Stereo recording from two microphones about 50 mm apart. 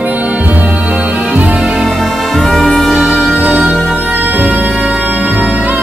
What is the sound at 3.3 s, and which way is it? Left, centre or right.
Music, right.